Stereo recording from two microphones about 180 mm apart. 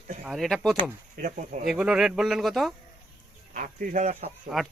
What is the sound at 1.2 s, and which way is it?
Speech, 50° right (ahead or behind).